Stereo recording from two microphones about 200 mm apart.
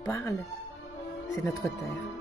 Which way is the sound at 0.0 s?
15° left (ahead or behind).